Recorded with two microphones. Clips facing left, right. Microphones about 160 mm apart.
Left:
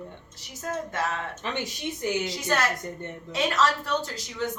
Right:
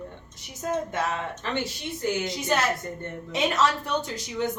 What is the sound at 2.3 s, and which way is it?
A woman's voice, 20° right (ahead or behind).